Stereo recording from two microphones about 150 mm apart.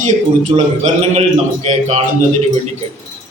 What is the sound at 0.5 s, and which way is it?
Speech, 25° right (ahead or behind).